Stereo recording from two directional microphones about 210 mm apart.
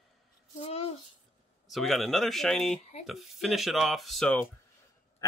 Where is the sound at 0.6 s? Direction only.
30° left (ahead or behind).